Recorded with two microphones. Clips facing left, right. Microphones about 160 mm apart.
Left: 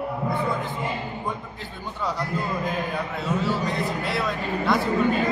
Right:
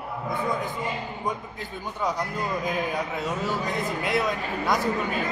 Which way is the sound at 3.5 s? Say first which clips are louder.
Left 2 dB; 15° right (ahead or behind).